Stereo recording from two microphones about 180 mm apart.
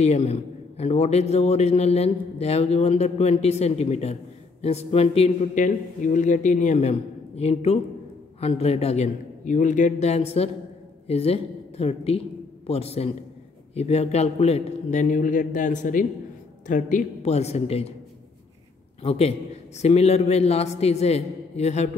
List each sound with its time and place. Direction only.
0.0 s a man's voice: 35° left (ahead or behind)
19.0 s a man's voice: 35° left (ahead or behind)